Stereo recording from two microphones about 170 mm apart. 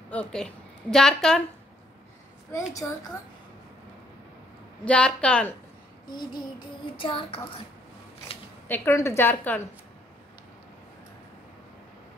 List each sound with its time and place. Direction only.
0.1 s a woman's voice: 5° left (ahead or behind)
2.5 s a woman's voice: 20° left (ahead or behind)
4.8 s a woman's voice: 5° left (ahead or behind)
6.0 s a woman's voice: 25° left (ahead or behind)
7.0 s child singing: 30° left (ahead or behind)
8.6 s a woman's voice: 10° left (ahead or behind)